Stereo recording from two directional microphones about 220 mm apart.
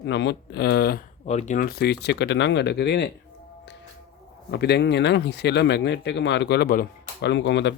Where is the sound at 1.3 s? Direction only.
30° left (ahead or behind); by 3.1 s 50° left (ahead or behind).